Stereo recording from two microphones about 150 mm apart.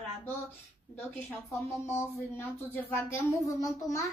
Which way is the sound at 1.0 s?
15° left (ahead or behind).